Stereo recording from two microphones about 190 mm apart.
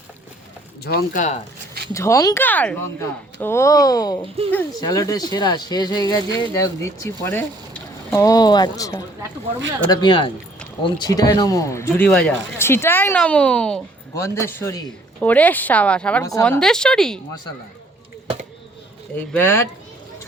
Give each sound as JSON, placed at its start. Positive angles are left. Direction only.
{"t": 0.9, "sound": "speech", "side_deg": 40}
{"t": 1.9, "sound": "speech", "side_deg": 15}
{"t": 14.1, "sound": "a woman's voice", "side_deg": 15}
{"t": 19.1, "sound": "speech", "side_deg": 10}